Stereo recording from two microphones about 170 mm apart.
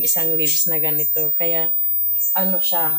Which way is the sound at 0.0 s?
20° right (ahead or behind).